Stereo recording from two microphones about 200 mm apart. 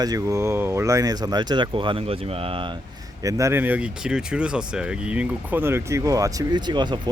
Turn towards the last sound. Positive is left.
turn(degrees=-20)  # may be behind; listen again after turning